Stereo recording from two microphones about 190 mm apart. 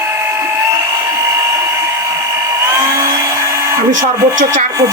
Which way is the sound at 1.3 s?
15° right (ahead or behind).